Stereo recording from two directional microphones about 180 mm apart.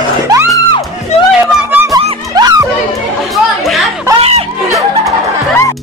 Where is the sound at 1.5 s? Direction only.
10° right (ahead or behind).